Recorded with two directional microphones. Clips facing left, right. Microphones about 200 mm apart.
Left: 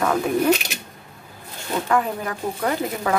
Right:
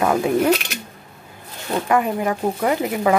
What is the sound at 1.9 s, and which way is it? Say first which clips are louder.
Speech: right 4 dB; 15° right (ahead or behind).